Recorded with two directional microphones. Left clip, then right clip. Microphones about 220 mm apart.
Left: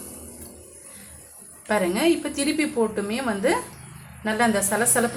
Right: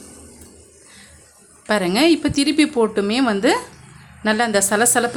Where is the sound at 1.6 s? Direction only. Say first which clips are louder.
Right 5 dB; 55° right (ahead or behind).